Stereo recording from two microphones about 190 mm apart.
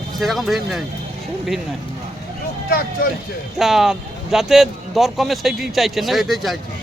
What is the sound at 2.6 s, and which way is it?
Speech, 50° left (ahead or behind).